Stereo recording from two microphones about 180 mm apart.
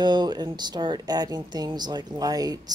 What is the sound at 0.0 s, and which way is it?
Speech, 25° right (ahead or behind).